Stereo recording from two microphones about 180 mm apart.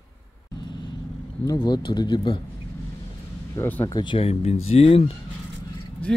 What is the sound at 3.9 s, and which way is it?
Speech, 30° left (ahead or behind).